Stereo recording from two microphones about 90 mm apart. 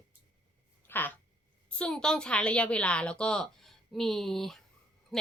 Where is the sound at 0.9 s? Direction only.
20° left (ahead or behind).